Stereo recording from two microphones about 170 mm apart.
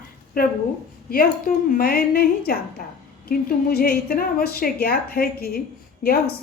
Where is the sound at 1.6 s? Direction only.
60° left (ahead or behind).